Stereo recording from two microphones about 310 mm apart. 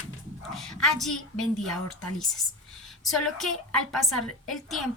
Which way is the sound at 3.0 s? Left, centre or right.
Centre.